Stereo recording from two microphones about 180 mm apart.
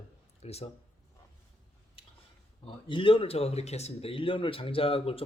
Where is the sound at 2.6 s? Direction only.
30° left (ahead or behind).